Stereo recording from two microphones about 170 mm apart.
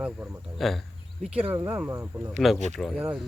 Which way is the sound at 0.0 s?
5° right (ahead or behind).